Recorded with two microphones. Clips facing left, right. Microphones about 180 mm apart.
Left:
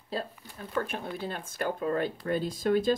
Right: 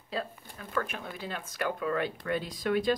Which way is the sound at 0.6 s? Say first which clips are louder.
Left 2 dB; 30° left (ahead or behind).